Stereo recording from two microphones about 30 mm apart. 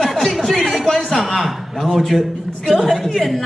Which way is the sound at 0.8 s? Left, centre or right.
Centre.